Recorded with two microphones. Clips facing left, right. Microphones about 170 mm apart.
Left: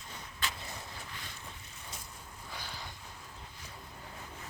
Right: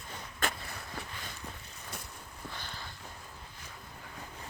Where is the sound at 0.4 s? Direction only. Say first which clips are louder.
Right 5 dB; 50° right (ahead or behind).